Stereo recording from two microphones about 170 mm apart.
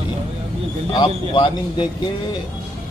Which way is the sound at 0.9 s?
25° left (ahead or behind).